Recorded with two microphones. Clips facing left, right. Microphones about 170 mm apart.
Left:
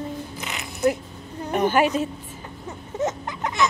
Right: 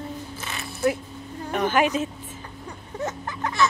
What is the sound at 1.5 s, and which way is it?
Speech, 20° left (ahead or behind).